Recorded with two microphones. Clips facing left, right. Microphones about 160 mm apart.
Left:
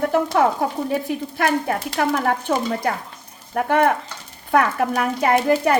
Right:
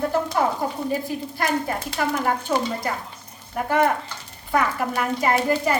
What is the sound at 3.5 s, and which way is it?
A woman's voice, 55° left (ahead or behind).